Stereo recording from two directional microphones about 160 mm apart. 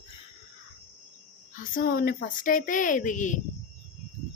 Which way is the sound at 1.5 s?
60° left (ahead or behind).